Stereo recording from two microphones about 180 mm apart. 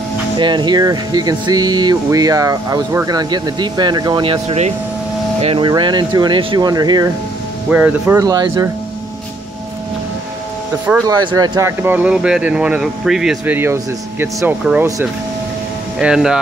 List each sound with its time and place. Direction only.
0.4 s speech: 25° right (ahead or behind)
7.7 s speech: 5° right (ahead or behind)
8.2 s speech: 20° right (ahead or behind)
11.1 s speech: 20° right (ahead or behind)
11.8 s speech: 10° right (ahead or behind)
16.0 s speech: 5° right (ahead or behind)